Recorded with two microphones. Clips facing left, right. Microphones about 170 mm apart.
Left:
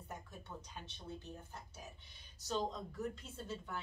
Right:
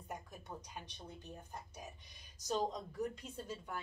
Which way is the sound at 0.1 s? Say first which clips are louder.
Right 2 dB; 15° right (ahead or behind).